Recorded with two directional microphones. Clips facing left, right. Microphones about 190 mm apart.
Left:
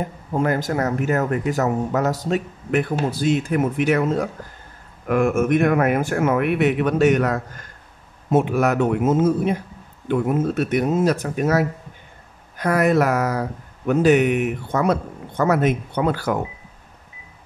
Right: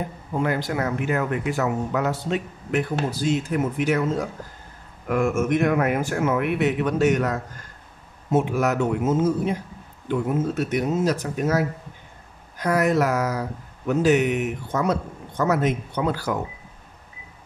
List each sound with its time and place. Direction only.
0.4 s speech: 45° left (ahead or behind)
2.7 s speech: 55° left (ahead or behind)